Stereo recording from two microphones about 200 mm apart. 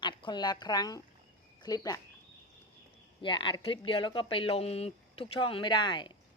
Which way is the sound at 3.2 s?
25° left (ahead or behind).